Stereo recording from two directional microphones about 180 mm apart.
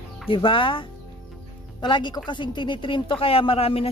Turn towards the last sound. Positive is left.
turn(degrees=35)  # may be behind; listen again after turning